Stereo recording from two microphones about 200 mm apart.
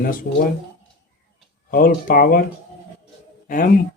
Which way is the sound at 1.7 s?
50° left (ahead or behind).